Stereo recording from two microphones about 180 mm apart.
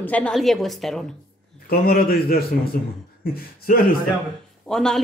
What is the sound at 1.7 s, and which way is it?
A man's voice, 55° left (ahead or behind).